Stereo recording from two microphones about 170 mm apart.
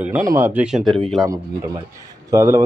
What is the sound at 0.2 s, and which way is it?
Speech, 15° right (ahead or behind).